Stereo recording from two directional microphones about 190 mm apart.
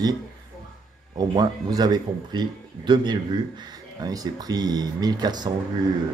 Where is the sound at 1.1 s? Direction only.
20° right (ahead or behind).